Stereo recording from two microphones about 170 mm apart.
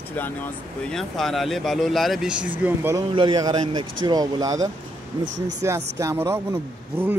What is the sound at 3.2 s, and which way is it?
Speech, 25° right (ahead or behind).